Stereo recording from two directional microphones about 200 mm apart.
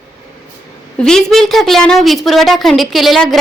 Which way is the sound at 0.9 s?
5° left (ahead or behind).